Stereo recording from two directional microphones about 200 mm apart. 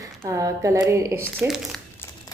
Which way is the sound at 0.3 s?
15° right (ahead or behind).